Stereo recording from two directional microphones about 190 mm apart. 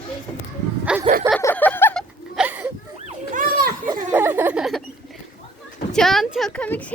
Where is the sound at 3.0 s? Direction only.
45° right (ahead or behind).